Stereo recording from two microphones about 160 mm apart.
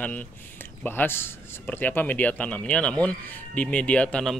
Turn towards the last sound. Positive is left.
turn(degrees=5)  # may be behind; listen again after turning